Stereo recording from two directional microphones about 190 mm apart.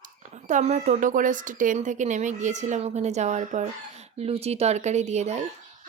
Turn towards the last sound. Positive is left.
turn(degrees=-35)  # may be behind; listen again after turning